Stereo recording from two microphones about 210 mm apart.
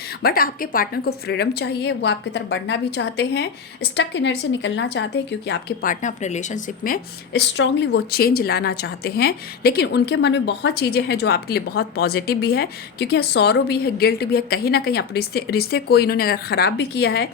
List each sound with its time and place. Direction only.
0.2 s a woman's voice: 45° left (ahead or behind)
7.5 s a woman's voice: 55° left (ahead or behind)